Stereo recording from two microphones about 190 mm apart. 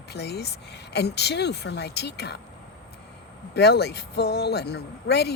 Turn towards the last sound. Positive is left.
turn(degrees=60)  # may be behind; listen again after turning